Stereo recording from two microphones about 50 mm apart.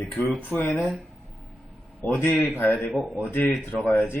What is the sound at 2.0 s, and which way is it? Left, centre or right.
Speech, left.